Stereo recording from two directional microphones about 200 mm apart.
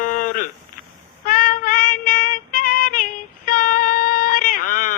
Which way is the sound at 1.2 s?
45° left (ahead or behind).